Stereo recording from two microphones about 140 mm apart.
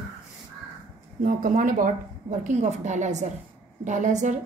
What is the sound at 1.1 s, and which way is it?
A woman's voice, 75° right (ahead or behind).